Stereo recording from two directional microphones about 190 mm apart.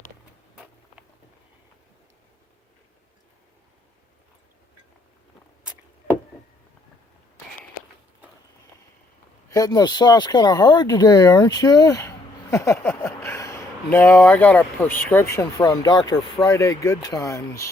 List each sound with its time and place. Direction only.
9.5 s speech: 20° left (ahead or behind)